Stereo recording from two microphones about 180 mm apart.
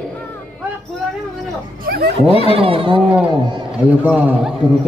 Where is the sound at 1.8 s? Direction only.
55° right (ahead or behind).